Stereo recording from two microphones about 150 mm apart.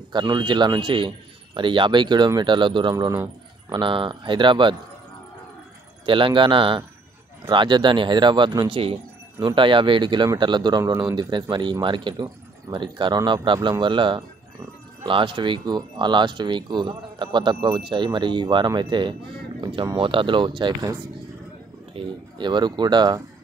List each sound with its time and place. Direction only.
0.1 s speech: 30° right (ahead or behind)
6.0 s speech: 35° right (ahead or behind)